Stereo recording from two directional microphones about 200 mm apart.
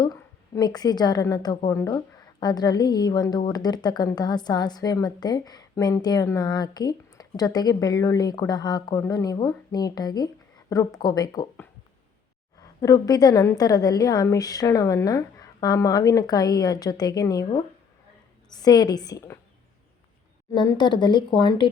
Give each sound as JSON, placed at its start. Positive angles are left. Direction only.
{"t": 0.0, "sound": "a woman's voice", "side_deg": 20}
{"t": 20.5, "sound": "a woman's voice", "side_deg": 20}